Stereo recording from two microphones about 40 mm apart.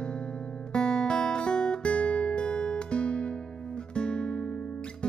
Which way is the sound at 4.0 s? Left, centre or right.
Left.